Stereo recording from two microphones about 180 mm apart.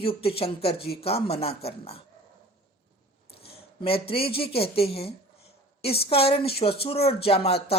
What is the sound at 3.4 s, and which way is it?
Speech, 30° left (ahead or behind).